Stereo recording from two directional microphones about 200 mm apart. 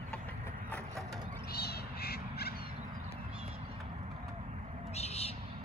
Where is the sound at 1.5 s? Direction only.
55° left (ahead or behind).